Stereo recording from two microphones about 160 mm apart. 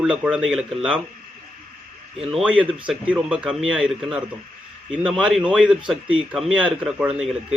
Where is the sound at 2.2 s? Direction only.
Centre (ahead or behind).